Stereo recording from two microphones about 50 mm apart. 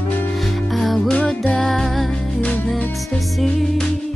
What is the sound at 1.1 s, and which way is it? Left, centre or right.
Music, left.